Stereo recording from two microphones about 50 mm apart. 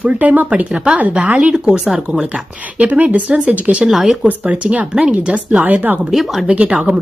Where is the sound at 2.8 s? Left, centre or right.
Right.